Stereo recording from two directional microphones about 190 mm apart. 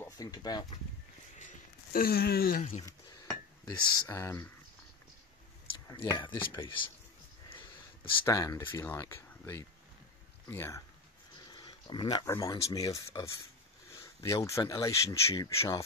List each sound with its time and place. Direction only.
0.0 s speech: 20° left (ahead or behind)
1.4 s a sound: 50° left (ahead or behind)
3.6 s speech: 15° left (ahead or behind)
5.9 s speech: 25° left (ahead or behind)
7.4 s a sound: 30° left (ahead or behind)
8.3 s speech: 15° left (ahead or behind)
11.5 s speech: 25° left (ahead or behind)